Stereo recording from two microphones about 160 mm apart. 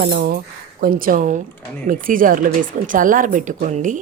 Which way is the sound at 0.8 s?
60° right (ahead or behind).